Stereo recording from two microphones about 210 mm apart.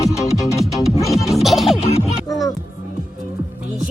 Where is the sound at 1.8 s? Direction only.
30° left (ahead or behind).